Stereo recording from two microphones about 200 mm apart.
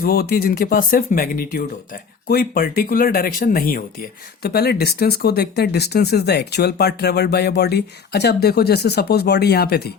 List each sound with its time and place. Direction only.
0.0 s speech: 50° left (ahead or behind)